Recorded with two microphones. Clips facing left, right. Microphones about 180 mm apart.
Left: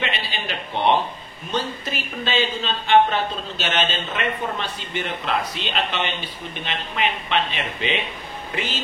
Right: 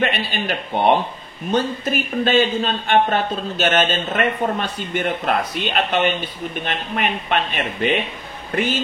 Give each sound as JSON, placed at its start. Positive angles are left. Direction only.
{"t": 0.0, "sound": "speech", "side_deg": -50}